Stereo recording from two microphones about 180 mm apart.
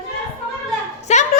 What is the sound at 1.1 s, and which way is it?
Speech, 40° left (ahead or behind).